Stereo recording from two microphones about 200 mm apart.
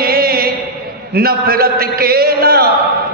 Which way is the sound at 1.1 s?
50° right (ahead or behind).